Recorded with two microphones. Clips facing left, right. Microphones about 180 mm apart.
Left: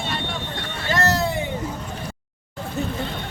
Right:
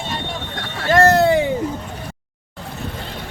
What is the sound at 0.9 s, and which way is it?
Vehicle, 50° right (ahead or behind).